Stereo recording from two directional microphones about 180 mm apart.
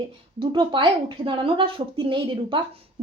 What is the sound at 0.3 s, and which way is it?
A woman's voice, 25° right (ahead or behind).